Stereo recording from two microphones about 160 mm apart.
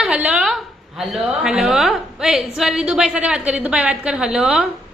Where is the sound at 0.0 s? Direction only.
5° right (ahead or behind).